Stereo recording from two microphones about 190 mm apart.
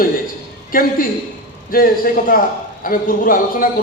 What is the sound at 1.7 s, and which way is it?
Speech, 50° left (ahead or behind).